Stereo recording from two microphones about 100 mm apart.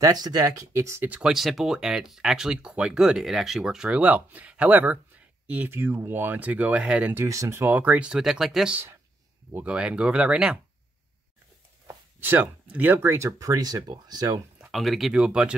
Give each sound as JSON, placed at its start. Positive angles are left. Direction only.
{"t": 0.0, "sound": "speech", "side_deg": -40}
{"t": 1.0, "sound": "speech", "side_deg": -15}
{"t": 1.3, "sound": "speech", "side_deg": 0}
{"t": 7.2, "sound": "speech", "side_deg": -30}
{"t": 12.2, "sound": "speech", "side_deg": -20}
{"t": 14.7, "sound": "speech", "side_deg": 0}